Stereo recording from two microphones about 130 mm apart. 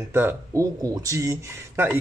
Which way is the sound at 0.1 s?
15° right (ahead or behind).